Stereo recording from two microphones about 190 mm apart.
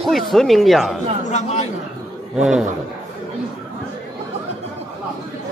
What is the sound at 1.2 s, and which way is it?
Speech, 40° left (ahead or behind).